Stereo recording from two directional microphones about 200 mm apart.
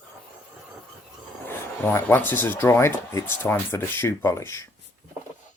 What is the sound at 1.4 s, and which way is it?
Speech, 10° left (ahead or behind).